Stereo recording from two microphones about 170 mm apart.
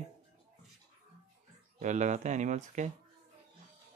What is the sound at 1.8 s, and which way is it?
Speech, 45° right (ahead or behind).